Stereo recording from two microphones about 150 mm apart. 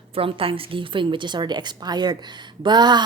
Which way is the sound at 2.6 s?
30° right (ahead or behind).